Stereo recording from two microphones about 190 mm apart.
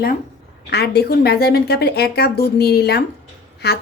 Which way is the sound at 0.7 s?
60° left (ahead or behind).